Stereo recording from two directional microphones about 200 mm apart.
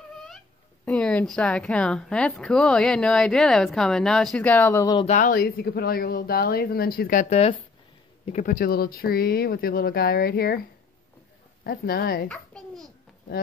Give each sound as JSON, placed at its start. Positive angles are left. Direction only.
{"t": 0.8, "sound": "speech", "side_deg": 5}
{"t": 5.0, "sound": "speech", "side_deg": 40}
{"t": 11.6, "sound": "speech", "side_deg": 50}
{"t": 12.3, "sound": "babbling", "side_deg": 5}